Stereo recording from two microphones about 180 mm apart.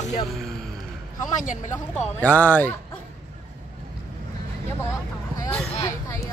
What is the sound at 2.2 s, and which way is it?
Speech, 10° left (ahead or behind).